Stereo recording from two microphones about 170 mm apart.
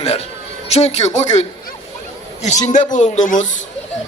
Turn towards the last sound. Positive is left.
turn(degrees=45)  # may be behind; listen again after turning